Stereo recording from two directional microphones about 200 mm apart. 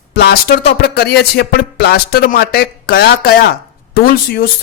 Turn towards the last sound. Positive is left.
turn(degrees=50)  # may be behind; listen again after turning